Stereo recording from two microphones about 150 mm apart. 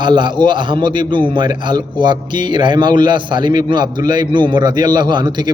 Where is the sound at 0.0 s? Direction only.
30° right (ahead or behind).